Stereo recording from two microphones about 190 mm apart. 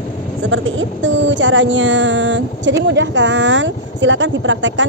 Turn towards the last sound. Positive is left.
turn(degrees=-75)  # may be behind; listen again after turning